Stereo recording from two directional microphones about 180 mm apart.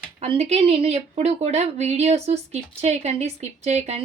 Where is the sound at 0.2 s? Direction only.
35° right (ahead or behind).